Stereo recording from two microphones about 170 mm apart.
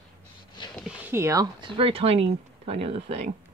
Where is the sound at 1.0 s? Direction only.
15° right (ahead or behind); by 3.1 s 35° right (ahead or behind).